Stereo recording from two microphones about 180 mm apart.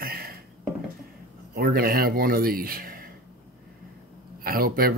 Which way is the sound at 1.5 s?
60° right (ahead or behind).